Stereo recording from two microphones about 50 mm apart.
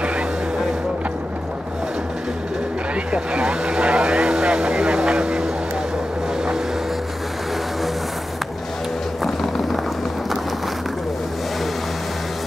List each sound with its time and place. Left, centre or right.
3.1 s vehicle: right